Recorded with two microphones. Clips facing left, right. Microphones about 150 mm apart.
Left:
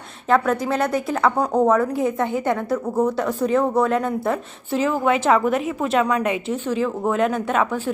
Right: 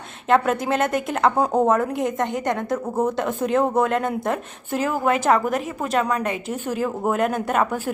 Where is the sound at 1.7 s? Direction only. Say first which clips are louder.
Left 2 dB; 5° left (ahead or behind).